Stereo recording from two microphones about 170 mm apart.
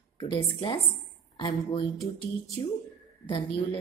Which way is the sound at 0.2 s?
30° left (ahead or behind).